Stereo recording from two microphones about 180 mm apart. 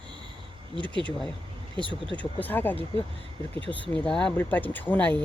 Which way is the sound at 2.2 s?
10° left (ahead or behind).